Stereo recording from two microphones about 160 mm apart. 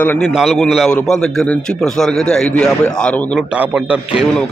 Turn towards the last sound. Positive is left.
turn(degrees=-10)  # may be behind; listen again after turning